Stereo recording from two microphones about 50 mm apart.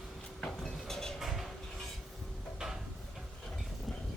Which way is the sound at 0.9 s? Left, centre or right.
Centre.